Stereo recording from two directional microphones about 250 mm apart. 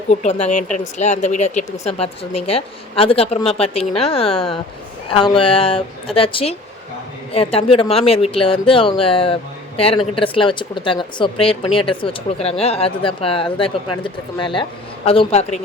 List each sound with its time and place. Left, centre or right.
0.1 s speech: left